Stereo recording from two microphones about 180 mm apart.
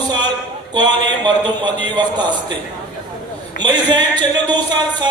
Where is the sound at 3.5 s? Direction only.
25° right (ahead or behind).